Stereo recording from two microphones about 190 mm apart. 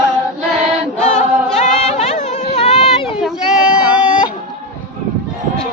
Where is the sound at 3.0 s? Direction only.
Centre (ahead or behind).